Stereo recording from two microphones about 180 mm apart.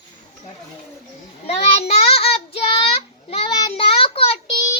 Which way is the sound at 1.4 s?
35° left (ahead or behind).